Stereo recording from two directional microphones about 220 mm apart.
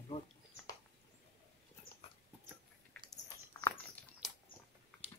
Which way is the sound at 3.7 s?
Centre (ahead or behind).